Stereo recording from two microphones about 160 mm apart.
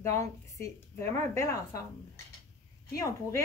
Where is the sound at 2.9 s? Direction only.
20° left (ahead or behind).